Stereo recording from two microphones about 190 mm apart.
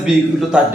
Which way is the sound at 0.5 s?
5° right (ahead or behind).